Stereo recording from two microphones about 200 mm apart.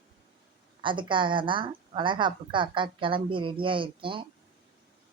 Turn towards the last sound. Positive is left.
turn(degrees=-25)  # may be behind; listen again after turning